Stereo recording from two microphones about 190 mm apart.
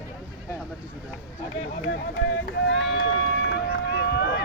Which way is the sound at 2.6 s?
80° left.